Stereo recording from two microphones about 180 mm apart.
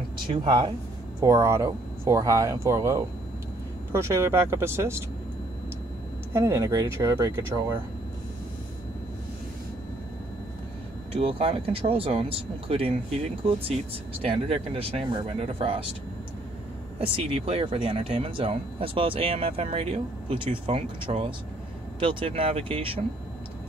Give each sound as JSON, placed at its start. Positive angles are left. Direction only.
{"t": 0.4, "sound": "speech", "side_deg": -25}
{"t": 6.3, "sound": "speech", "side_deg": -15}
{"t": 11.1, "sound": "speech", "side_deg": -30}
{"t": 17.0, "sound": "speech", "side_deg": -30}